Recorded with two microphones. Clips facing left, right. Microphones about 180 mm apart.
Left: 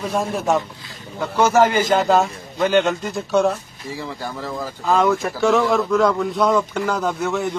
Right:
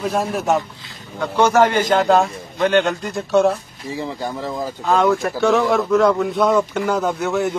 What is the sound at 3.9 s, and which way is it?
Speech, 20° right (ahead or behind).